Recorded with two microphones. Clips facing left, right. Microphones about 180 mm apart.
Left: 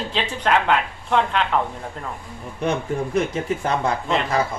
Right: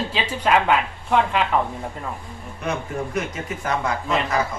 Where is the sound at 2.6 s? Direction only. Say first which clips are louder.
Left 4 dB; 30° left (ahead or behind).